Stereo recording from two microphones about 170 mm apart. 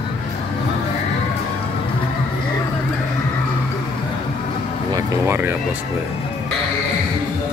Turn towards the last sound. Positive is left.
turn(degrees=-15)  # may be behind; listen again after turning